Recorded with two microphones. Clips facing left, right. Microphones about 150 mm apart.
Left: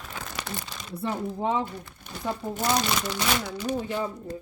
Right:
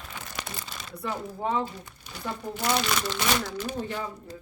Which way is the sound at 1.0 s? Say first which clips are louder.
Left 3 dB; 20° left (ahead or behind).